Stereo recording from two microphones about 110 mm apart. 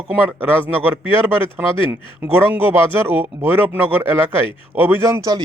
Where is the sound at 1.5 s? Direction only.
20° right (ahead or behind).